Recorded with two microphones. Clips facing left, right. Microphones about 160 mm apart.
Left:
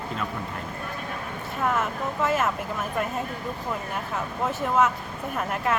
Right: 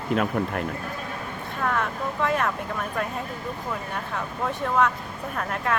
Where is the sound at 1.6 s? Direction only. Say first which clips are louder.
Left 1 dB; 5° left (ahead or behind).